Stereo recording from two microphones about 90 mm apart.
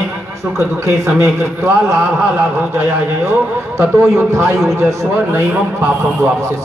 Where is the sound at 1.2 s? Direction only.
20° right (ahead or behind).